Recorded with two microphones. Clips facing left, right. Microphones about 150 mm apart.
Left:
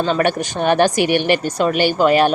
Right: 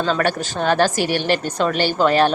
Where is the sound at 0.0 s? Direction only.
15° left (ahead or behind).